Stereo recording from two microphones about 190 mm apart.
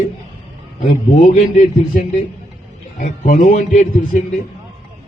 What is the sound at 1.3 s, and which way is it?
A man's voice, 45° left (ahead or behind).